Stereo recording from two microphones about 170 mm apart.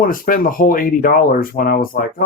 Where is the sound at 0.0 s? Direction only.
55° left (ahead or behind).